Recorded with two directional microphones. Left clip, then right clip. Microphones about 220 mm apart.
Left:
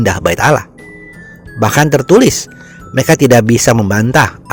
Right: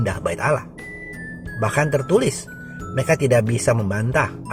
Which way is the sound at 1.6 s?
45° left (ahead or behind).